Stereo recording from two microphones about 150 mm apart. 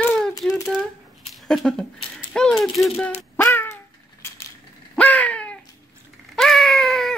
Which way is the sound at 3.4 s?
15° left (ahead or behind).